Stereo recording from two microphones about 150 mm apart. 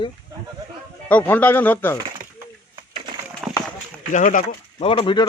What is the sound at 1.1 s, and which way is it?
Speech, 10° left (ahead or behind).